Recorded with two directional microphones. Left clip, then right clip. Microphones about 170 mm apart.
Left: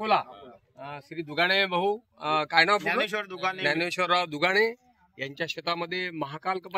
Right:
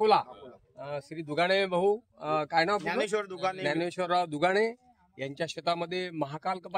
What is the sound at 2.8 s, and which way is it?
Speech, 90° right.